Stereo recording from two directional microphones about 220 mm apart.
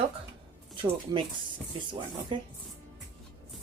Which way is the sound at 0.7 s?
20° right (ahead or behind).